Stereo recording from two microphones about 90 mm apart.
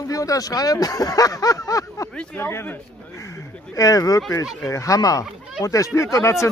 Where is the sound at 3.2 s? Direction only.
35° left (ahead or behind).